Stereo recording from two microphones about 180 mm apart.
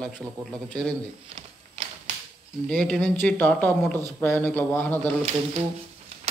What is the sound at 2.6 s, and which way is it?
Speech, 5° left (ahead or behind).